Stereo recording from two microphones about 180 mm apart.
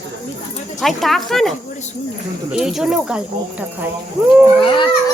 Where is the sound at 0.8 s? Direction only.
Centre (ahead or behind).